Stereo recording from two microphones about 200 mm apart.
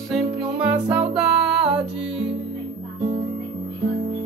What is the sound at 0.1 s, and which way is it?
Music, 5° right (ahead or behind).